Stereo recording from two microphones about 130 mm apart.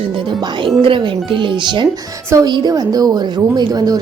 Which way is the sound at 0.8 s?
40° right (ahead or behind).